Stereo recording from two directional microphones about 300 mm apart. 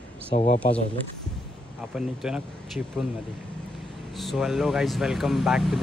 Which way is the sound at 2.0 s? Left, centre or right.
Centre.